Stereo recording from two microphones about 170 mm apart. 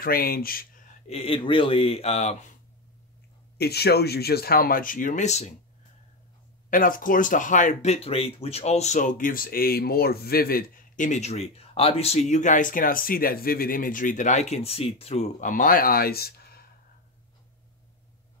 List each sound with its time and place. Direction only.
0.0 s speech: 60° left (ahead or behind)
1.0 s speech: 35° left (ahead or behind)
3.5 s speech: 70° left (ahead or behind); by 5.5 s 40° left (ahead or behind)
6.7 s speech: 55° left (ahead or behind)